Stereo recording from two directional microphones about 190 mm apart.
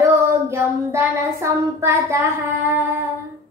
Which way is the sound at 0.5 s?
15° right (ahead or behind).